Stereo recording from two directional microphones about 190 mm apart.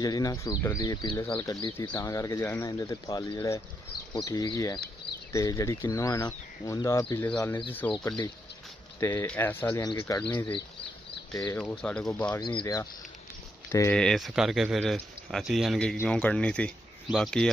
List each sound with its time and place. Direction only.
0.0 s speech: 20° left (ahead or behind)
9.0 s speech: 10° left (ahead or behind)
11.8 s speech: 5° left (ahead or behind)
12.4 s speech: 20° left (ahead or behind)
13.9 s speech: centre (ahead or behind)